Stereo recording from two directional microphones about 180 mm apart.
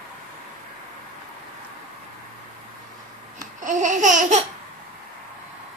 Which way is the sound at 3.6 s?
45° right (ahead or behind).